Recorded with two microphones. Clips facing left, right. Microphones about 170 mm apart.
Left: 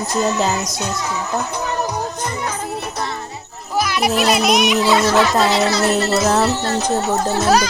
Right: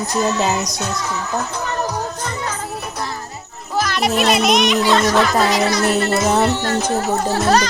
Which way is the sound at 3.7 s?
10° left (ahead or behind).